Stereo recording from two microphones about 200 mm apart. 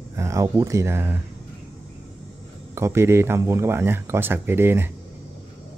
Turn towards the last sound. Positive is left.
turn(degrees=-10)  # may be behind; listen again after turning